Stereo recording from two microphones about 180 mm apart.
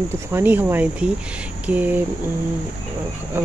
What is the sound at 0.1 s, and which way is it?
Speech, 15° right (ahead or behind).